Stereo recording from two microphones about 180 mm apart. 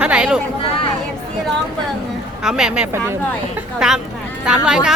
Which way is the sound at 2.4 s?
5° right (ahead or behind).